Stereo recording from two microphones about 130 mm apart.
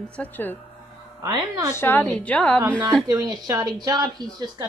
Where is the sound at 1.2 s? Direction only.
30° right (ahead or behind).